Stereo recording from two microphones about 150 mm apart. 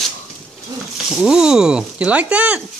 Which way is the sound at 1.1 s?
5° right (ahead or behind).